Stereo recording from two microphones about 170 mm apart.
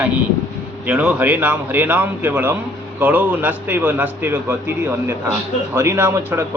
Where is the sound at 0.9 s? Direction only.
10° right (ahead or behind).